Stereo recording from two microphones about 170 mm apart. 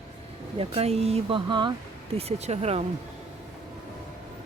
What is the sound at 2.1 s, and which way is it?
Speech, 40° right (ahead or behind).